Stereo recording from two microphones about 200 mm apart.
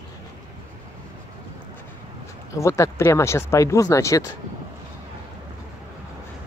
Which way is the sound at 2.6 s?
15° left (ahead or behind).